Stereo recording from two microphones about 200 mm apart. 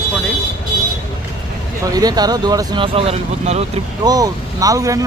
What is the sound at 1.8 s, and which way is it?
Speech, 20° right (ahead or behind).